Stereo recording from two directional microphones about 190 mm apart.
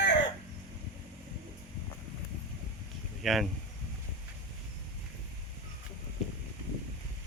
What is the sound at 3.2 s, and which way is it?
Speech, centre (ahead or behind).